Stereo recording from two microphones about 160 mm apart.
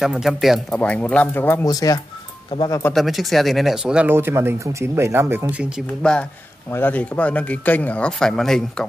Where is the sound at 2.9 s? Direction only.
Centre (ahead or behind).